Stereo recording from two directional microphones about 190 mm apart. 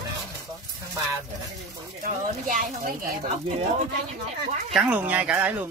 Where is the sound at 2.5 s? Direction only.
45° right (ahead or behind).